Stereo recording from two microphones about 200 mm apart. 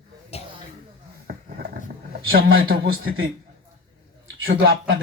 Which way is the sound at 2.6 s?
50° right (ahead or behind).